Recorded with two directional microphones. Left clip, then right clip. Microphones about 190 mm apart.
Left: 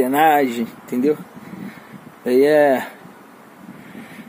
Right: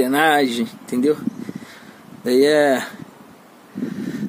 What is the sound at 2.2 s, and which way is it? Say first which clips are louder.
Speech: left 1 dB; 5° right (ahead or behind).